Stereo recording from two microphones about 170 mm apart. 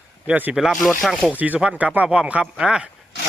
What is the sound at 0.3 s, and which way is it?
Speech, 10° right (ahead or behind).